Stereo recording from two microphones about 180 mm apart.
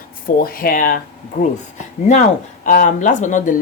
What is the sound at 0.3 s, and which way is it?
Speech, 55° left (ahead or behind).